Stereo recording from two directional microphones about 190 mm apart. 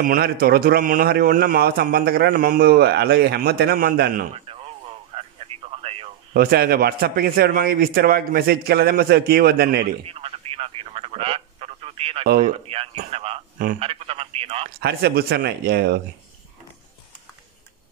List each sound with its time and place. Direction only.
0.0 s speech: 50° right (ahead or behind)
4.5 s radio: 30° right (ahead or behind)
6.3 s a man's voice: 50° right (ahead or behind)
10.0 s radio: 30° right (ahead or behind)
12.4 s speech: 30° right (ahead or behind)
14.8 s a man's voice: 60° right (ahead or behind)